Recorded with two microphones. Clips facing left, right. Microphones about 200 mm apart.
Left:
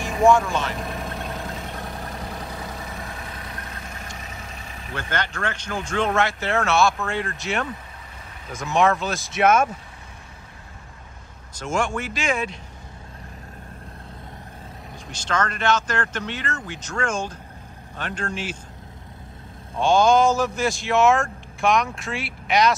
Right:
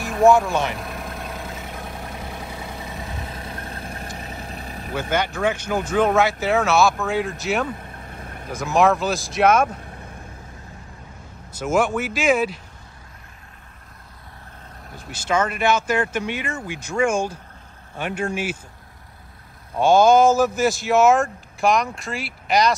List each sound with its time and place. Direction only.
0.0 s speech: 5° right (ahead or behind)
0.7 s vehicle: centre (ahead or behind)
2.8 s vehicle: 15° right (ahead or behind); by 4.9 s 40° right (ahead or behind)
4.9 s speech: 10° right (ahead or behind)
8.1 s vehicle: 55° right (ahead or behind)
8.5 s speech: centre (ahead or behind)
11.6 s speech: 5° right (ahead or behind)
15.0 s speech: 10° right (ahead or behind)
19.8 s speech: 5° right (ahead or behind)